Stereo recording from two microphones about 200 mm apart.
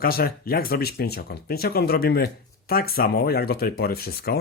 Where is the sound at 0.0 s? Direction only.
50° left (ahead or behind).